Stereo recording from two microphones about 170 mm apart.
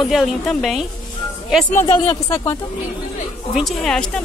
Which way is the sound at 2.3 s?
15° left (ahead or behind).